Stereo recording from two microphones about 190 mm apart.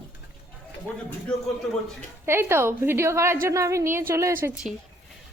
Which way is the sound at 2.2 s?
15° right (ahead or behind).